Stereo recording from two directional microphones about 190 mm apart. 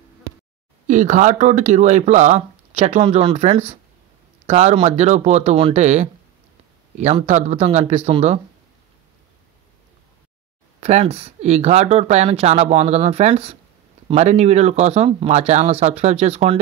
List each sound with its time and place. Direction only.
0.8 s speech: 40° right (ahead or behind)
10.8 s speech: 35° right (ahead or behind)